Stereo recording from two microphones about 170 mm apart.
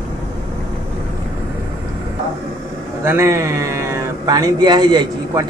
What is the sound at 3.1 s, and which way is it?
Speech, 15° right (ahead or behind).